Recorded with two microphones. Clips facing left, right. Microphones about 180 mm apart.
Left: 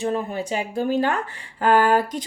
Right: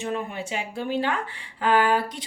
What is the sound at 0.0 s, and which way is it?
Speech, 35° left (ahead or behind).